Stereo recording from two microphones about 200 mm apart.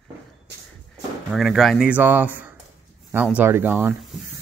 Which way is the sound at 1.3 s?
Centre (ahead or behind).